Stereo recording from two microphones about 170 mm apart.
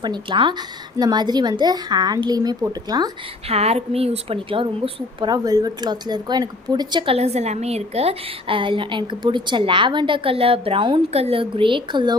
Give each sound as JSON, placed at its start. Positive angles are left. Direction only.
{"t": 0.0, "sound": "a woman's voice", "side_deg": -30}
{"t": 3.4, "sound": "a woman's voice", "side_deg": -35}